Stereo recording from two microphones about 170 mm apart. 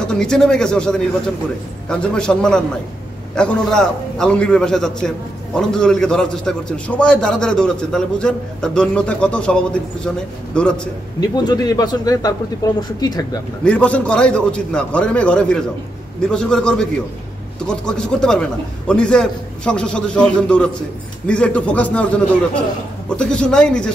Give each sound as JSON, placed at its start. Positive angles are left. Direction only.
{"t": 0.0, "sound": "a man's voice", "side_deg": 5}
{"t": 11.1, "sound": "speech", "side_deg": 25}
{"t": 13.7, "sound": "a man's voice", "side_deg": 5}